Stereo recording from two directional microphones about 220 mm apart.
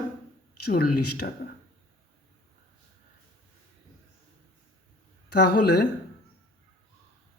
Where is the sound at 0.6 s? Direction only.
45° left (ahead or behind).